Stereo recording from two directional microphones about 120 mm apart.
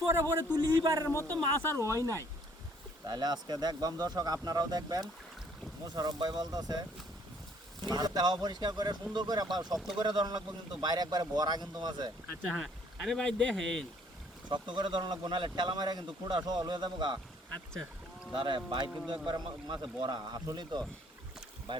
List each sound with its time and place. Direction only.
0.1 s a man's voice: 25° right (ahead or behind)
1.0 s speech: 20° left (ahead or behind)
1.8 s a man's voice: 30° right (ahead or behind)
7.8 s speech: 35° right (ahead or behind)
12.5 s speech: centre (ahead or behind)
14.5 s speech: 40° right (ahead or behind)
18.3 s speech: 45° right (ahead or behind)